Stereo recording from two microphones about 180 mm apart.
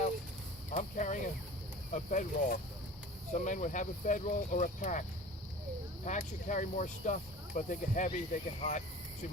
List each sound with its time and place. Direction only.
0.7 s a sound: 45° left (ahead or behind)
1.9 s speech: 45° left (ahead or behind)
6.1 s speech: 45° left (ahead or behind)